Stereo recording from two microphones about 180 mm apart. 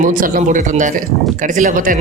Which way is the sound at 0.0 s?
50° right (ahead or behind).